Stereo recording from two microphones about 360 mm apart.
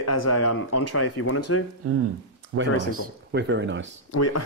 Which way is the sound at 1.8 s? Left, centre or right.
Right.